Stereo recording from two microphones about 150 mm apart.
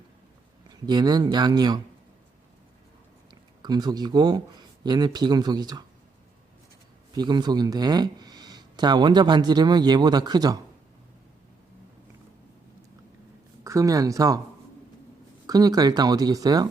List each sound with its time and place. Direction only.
0.7 s speech: 25° right (ahead or behind)
3.6 s speech: 30° right (ahead or behind)
7.2 s speech: 30° right (ahead or behind)
13.7 s speech: 20° right (ahead or behind)
15.4 s speech: 25° right (ahead or behind)